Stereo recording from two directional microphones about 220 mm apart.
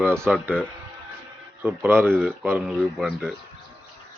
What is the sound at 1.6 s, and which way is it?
Speech, 10° right (ahead or behind).